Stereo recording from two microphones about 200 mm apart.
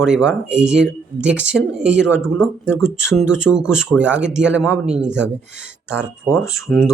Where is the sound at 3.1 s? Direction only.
5° right (ahead or behind).